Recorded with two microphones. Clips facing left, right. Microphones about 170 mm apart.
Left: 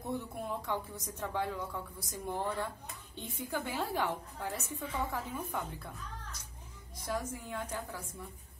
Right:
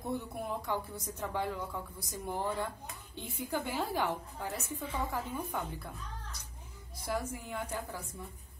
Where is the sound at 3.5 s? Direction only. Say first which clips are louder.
Right 1 dB; 15° right (ahead or behind).